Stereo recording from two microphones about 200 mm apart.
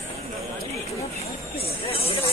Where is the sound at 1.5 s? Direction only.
30° left (ahead or behind).